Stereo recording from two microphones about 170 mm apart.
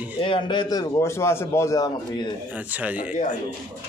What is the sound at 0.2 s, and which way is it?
A man's voice, 30° left (ahead or behind).